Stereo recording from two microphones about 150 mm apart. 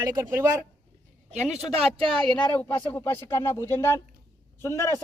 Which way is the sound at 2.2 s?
10° left (ahead or behind).